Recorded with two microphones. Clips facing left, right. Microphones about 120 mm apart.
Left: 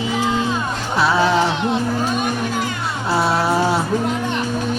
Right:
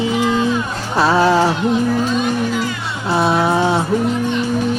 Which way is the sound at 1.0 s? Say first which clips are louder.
Right 3 dB; 40° right (ahead or behind).